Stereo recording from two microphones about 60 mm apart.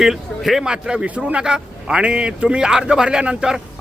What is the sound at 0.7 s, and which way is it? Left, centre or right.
A man's voice, centre.